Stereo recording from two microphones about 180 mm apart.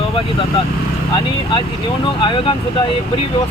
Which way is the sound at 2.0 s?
25° left (ahead or behind).